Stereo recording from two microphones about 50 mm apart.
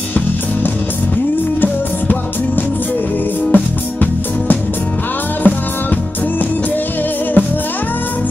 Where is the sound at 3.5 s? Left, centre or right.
Left.